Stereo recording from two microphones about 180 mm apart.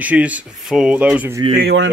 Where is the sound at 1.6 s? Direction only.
65° right (ahead or behind).